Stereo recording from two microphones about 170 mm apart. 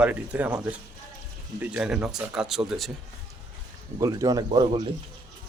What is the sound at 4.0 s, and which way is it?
Speech, 20° right (ahead or behind).